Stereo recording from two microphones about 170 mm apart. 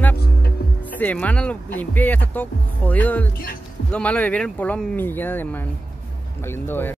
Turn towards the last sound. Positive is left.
turn(degrees=10)  # may be behind; listen again after turning